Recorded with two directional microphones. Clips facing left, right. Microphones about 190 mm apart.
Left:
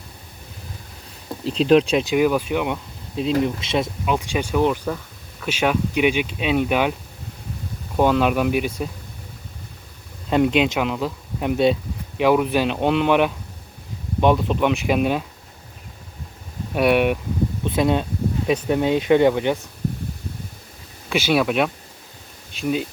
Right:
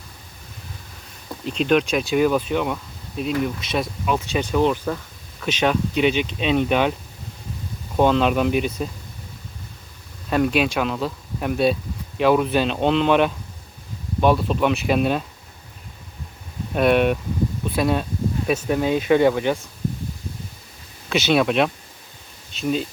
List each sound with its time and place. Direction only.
1.5 s speech: 30° left (ahead or behind)
2.0 s speech: 15° left (ahead or behind)
3.2 s speech: 25° left (ahead or behind); by 6.9 s 10° left (ahead or behind)
7.9 s speech: 10° left (ahead or behind)
10.2 s speech: 20° left (ahead or behind)
16.7 s speech: 10° left (ahead or behind)
21.1 s speech: 10° left (ahead or behind)